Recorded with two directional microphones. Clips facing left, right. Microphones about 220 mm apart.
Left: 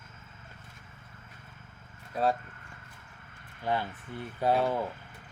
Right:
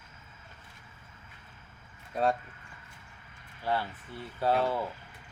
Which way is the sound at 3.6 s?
15° left (ahead or behind).